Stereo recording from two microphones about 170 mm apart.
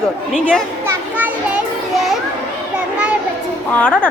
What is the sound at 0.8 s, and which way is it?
Children playing, 10° right (ahead or behind).